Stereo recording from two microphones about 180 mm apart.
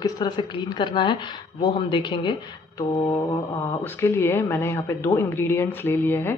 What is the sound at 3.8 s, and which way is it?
Speech, 15° left (ahead or behind).